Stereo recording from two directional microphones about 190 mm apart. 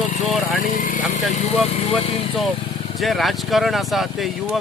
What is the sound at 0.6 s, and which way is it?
Vehicle, 45° left (ahead or behind).